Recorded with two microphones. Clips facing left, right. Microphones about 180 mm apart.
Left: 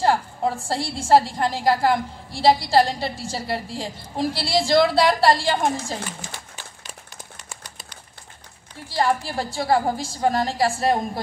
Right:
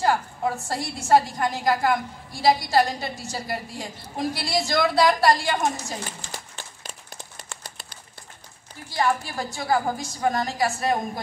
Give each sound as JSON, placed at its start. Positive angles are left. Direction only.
{"t": 0.0, "sound": "a woman's voice", "side_deg": 30}
{"t": 8.8, "sound": "a woman's voice", "side_deg": 30}